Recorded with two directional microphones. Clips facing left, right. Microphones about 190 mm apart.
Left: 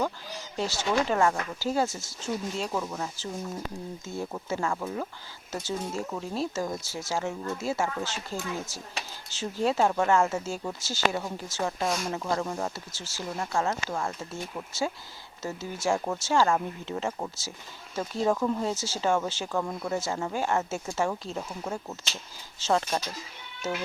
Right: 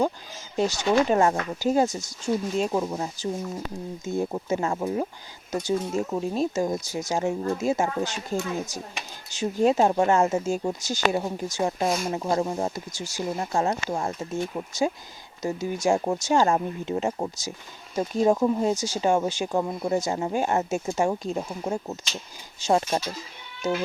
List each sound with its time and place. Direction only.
0.5 s speech: 15° right (ahead or behind)
11.9 s speech: centre (ahead or behind)
12.1 s speech: 25° right (ahead or behind)